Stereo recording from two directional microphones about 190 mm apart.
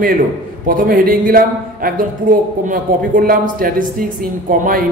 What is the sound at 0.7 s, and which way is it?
A man's voice, 50° right (ahead or behind).